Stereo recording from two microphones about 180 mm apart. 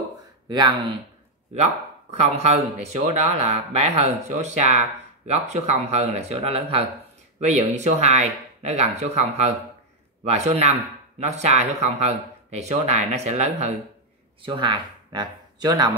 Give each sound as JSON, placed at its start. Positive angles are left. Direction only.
{"t": 0.5, "sound": "speech", "side_deg": -25}
{"t": 1.5, "sound": "speech", "side_deg": -40}
{"t": 14.4, "sound": "speech", "side_deg": -25}